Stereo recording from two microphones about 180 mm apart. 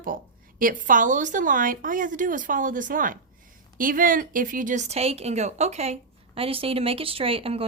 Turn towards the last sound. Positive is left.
turn(degrees=-30)  # may be behind; listen again after turning